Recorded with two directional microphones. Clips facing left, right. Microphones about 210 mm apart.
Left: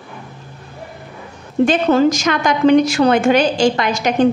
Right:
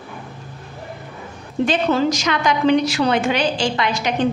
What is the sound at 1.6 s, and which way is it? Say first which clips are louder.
A woman's voice: left 5 dB; 50° left (ahead or behind).